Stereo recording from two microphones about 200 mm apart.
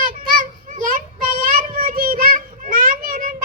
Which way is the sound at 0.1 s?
45° right (ahead or behind).